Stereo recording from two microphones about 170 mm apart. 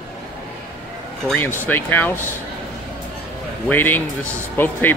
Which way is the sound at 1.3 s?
10° left (ahead or behind).